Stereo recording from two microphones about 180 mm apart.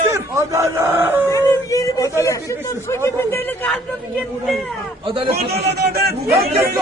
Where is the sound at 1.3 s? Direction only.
15° left (ahead or behind).